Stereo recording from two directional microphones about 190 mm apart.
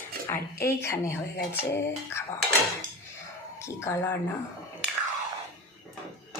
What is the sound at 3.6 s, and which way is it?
Speech, 15° left (ahead or behind).